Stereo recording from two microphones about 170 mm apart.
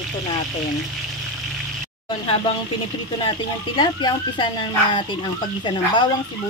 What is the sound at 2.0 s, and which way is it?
Speech, 30° left (ahead or behind).